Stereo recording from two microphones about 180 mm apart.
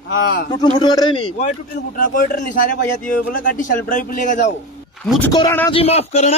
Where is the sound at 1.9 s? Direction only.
45° left (ahead or behind).